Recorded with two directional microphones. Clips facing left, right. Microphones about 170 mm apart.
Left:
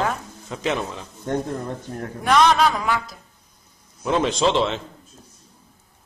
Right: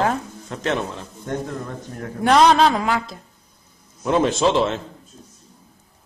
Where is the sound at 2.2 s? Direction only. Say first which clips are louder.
Right 3 dB; 30° right (ahead or behind).